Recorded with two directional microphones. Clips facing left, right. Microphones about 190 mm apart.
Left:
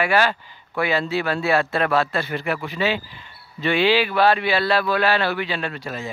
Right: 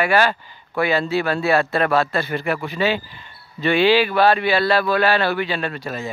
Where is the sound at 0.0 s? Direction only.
50° right (ahead or behind).